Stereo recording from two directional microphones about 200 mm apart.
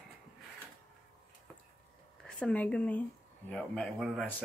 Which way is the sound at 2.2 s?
5° left (ahead or behind).